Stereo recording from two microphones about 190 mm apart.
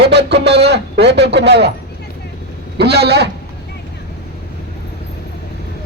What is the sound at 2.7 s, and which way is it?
Speech, 60° right (ahead or behind).